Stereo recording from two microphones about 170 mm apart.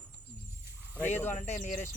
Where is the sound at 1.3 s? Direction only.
45° left (ahead or behind).